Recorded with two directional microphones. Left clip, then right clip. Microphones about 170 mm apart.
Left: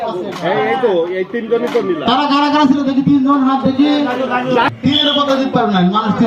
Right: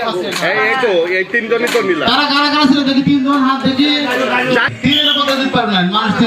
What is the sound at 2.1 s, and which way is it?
Speech, 35° right (ahead or behind).